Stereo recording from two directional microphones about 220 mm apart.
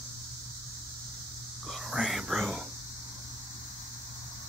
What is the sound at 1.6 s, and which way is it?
Whispering, centre (ahead or behind).